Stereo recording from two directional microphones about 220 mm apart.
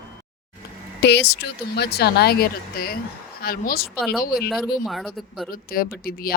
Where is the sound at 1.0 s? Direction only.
50° left (ahead or behind).